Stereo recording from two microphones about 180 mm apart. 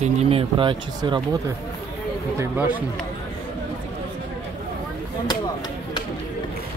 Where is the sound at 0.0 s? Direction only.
35° right (ahead or behind).